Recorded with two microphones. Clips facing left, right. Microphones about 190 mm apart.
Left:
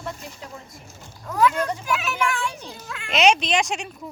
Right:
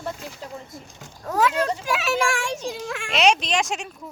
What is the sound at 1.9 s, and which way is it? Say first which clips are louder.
A child's voice: right 3 dB; 85° right.